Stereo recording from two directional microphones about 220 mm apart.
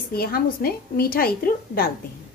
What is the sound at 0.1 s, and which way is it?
A woman's voice, 45° left (ahead or behind).